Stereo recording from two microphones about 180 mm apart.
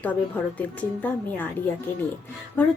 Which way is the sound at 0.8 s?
10° left (ahead or behind).